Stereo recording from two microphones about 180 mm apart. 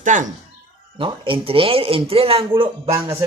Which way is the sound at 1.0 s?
30° right (ahead or behind).